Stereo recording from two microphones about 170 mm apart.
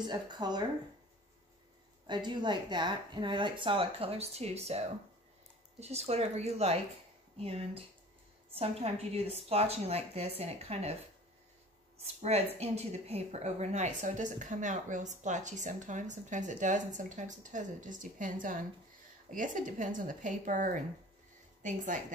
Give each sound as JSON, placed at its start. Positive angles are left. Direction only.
{"t": 0.0, "sound": "speech", "side_deg": -25}
{"t": 2.0, "sound": "a woman's voice", "side_deg": -25}
{"t": 12.0, "sound": "speech", "side_deg": -40}